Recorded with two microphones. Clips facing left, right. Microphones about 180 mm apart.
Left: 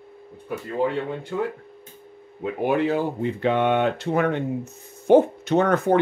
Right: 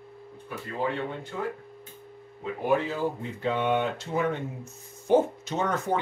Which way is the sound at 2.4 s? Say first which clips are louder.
Left 4 dB; 65° left (ahead or behind).